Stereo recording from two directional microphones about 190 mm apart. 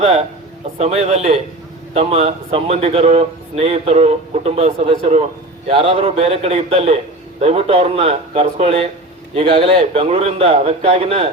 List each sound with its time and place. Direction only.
0.8 s speech: 35° right (ahead or behind)